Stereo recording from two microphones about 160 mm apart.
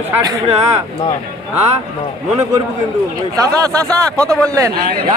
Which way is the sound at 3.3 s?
20° right (ahead or behind).